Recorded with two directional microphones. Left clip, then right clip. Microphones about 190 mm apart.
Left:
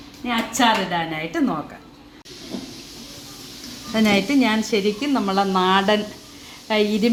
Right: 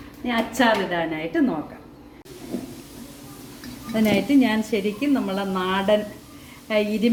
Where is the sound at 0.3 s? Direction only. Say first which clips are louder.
Left 1 dB; 40° left (ahead or behind).